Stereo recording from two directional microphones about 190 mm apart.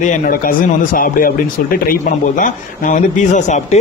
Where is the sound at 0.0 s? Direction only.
50° left (ahead or behind).